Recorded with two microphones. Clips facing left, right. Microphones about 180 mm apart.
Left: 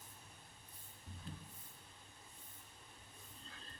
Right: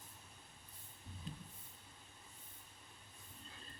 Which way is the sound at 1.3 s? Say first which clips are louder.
Right 1 dB; 15° right (ahead or behind).